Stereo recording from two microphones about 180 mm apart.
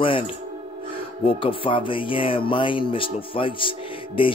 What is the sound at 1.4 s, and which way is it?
Speech, 30° left (ahead or behind).